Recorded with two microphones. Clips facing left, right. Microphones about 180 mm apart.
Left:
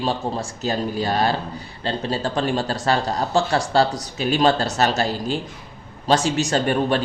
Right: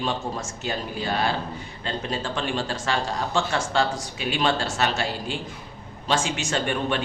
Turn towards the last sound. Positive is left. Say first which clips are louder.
# left 5 dB
turn(degrees=40)  # may be behind; listen again after turning